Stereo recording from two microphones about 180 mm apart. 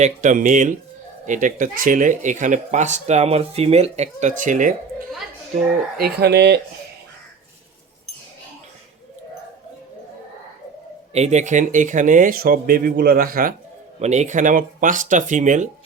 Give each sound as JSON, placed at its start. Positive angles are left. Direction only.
{"t": 0.0, "sound": "speech", "side_deg": -45}
{"t": 6.0, "sound": "speech", "side_deg": -65}
{"t": 11.1, "sound": "speech", "side_deg": -40}
{"t": 14.0, "sound": "speech", "side_deg": -40}